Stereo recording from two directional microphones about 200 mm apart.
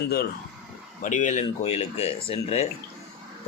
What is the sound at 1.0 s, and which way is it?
A man's voice, 40° left (ahead or behind).